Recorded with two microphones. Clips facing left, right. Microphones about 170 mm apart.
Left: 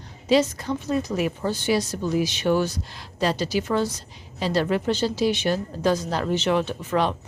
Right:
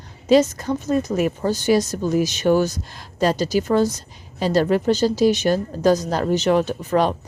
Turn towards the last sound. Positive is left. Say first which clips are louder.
# right 4 dB
turn(degrees=-40)  # may be behind; listen again after turning